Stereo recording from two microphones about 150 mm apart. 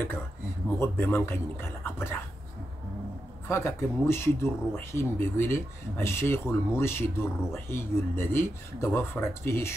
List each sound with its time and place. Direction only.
0.7 s speech: 15° left (ahead or behind)
3.4 s speech: 15° left (ahead or behind)